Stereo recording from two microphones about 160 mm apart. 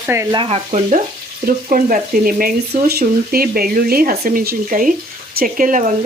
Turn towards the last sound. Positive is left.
turn(degrees=-55)  # may be behind; listen again after turning